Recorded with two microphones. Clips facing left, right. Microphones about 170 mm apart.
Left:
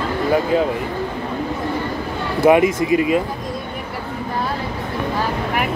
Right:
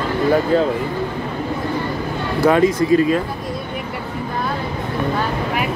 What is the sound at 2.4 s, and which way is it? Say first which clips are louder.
Speech: left 1 dB; 20° left (ahead or behind).